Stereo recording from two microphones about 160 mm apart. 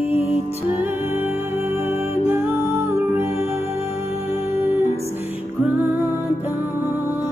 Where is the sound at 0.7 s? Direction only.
15° right (ahead or behind).